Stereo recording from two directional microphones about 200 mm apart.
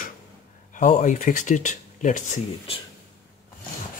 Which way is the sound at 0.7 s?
35° left (ahead or behind).